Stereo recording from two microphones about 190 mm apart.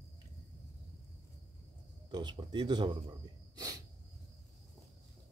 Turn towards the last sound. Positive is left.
turn(degrees=-20)  # may be behind; listen again after turning